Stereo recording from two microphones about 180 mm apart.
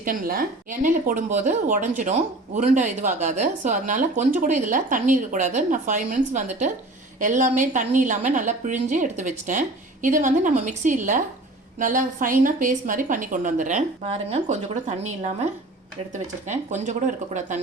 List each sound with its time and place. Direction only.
0.0 s a woman's voice: 50° right (ahead or behind)